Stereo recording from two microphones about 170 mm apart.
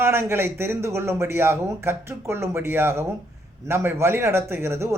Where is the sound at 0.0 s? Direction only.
15° right (ahead or behind).